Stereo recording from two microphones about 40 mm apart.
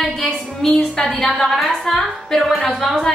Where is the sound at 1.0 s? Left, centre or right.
Centre.